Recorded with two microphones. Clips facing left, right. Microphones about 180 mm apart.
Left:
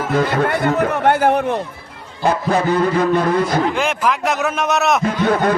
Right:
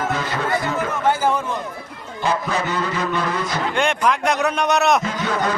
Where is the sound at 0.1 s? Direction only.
55° left (ahead or behind).